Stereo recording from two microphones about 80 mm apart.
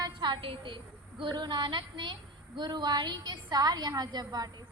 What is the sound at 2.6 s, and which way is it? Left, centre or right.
A woman's voice, right.